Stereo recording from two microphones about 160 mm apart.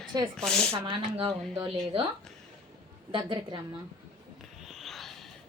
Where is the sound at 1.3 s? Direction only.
5° left (ahead or behind).